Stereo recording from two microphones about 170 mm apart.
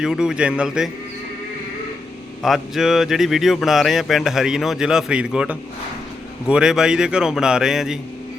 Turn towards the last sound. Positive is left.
turn(degrees=-5)  # may be behind; listen again after turning